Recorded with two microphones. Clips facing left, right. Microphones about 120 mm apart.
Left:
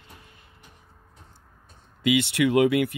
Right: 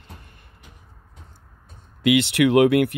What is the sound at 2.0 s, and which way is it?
Speech, 70° right (ahead or behind).